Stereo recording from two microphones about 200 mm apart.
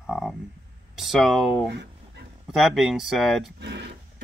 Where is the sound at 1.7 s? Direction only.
60° right (ahead or behind).